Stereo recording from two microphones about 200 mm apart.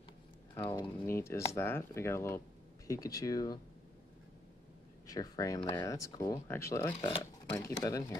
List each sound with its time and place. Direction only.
1.0 s speech: 15° left (ahead or behind)
5.0 s speech: 20° left (ahead or behind)